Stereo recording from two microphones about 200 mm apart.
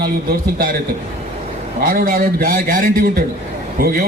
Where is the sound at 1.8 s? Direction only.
45° right (ahead or behind).